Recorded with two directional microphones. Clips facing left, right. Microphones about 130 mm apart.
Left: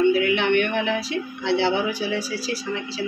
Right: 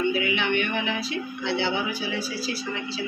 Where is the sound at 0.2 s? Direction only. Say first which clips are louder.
Left 5 dB; 75° left (ahead or behind).